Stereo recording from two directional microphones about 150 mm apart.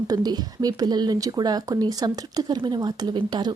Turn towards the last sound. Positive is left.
turn(degrees=-30)  # may be behind; listen again after turning